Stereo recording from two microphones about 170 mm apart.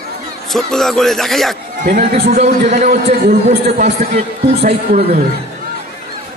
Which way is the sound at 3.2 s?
60° right (ahead or behind).